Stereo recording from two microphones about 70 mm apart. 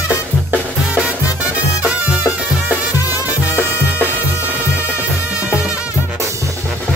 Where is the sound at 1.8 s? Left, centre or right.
Right.